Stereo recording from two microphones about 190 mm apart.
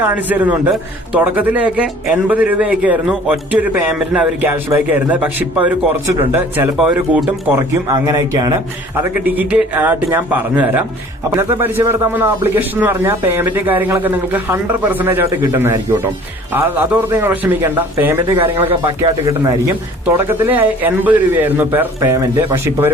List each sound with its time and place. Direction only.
0.0 s speech: 10° right (ahead or behind)
18.3 s speech: 30° right (ahead or behind)
19.3 s speech: 15° right (ahead or behind)